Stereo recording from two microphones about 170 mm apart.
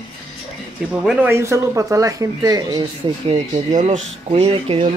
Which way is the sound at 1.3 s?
15° right (ahead or behind).